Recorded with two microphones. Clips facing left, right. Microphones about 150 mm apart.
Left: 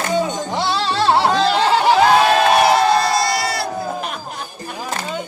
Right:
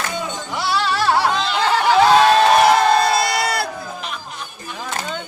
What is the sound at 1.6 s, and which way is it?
Snicker, 20° left (ahead or behind).